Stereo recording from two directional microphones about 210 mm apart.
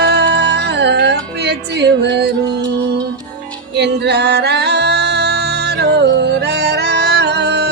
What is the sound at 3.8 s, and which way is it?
Music, 55° right (ahead or behind).